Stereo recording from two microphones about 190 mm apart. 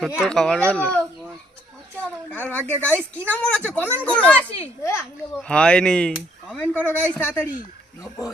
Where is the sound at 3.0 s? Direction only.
10° right (ahead or behind).